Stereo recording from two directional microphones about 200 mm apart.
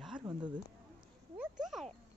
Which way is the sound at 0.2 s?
20° right (ahead or behind).